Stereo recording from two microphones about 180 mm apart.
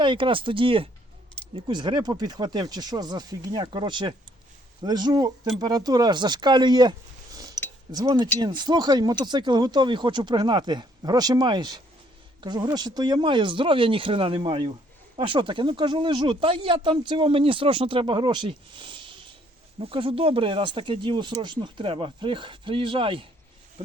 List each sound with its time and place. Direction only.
0.0 s speech: 30° right (ahead or behind)
7.3 s a sound: 20° right (ahead or behind)
7.9 s speech: 25° right (ahead or behind)